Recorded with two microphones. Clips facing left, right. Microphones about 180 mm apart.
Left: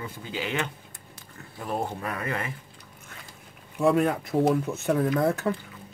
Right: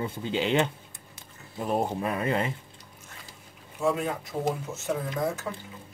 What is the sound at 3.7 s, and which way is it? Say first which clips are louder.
Speech: left 5 dB; 60° left (ahead or behind).